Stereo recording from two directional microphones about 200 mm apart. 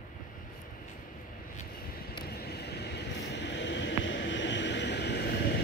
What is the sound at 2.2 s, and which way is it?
Vehicle, 50° left (ahead or behind).